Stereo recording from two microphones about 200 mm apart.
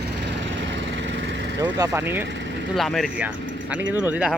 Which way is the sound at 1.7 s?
15° right (ahead or behind).